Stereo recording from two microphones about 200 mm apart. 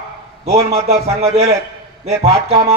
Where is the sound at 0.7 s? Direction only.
30° right (ahead or behind).